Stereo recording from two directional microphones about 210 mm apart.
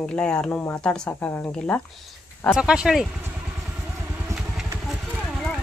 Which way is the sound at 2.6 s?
5° right (ahead or behind).